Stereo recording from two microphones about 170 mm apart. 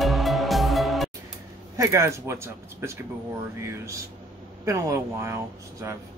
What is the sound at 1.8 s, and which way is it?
Speech, 15° right (ahead or behind).